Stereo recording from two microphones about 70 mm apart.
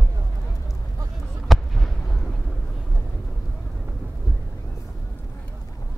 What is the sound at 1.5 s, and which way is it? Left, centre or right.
Fireworks, centre.